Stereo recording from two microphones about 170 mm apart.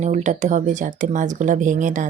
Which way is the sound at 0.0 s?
45° right (ahead or behind).